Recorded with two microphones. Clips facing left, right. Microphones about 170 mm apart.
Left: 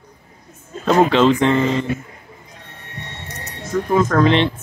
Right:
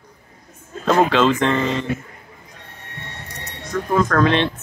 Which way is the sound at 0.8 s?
15° left (ahead or behind).